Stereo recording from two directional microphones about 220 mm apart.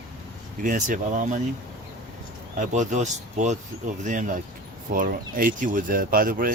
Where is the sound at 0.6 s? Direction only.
35° right (ahead or behind).